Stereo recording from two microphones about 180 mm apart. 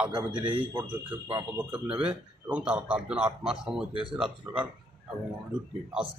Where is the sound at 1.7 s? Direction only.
5° right (ahead or behind).